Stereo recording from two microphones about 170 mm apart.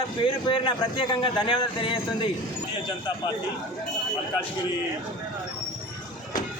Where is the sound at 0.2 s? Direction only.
30° left (ahead or behind).